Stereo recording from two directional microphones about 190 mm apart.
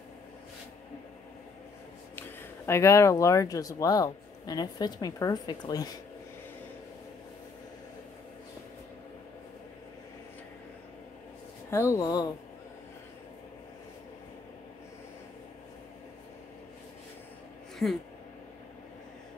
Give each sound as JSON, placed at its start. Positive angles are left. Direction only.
{"t": 2.1, "sound": "speech", "side_deg": 15}
{"t": 11.7, "sound": "speech", "side_deg": 15}
{"t": 17.8, "sound": "speech", "side_deg": 5}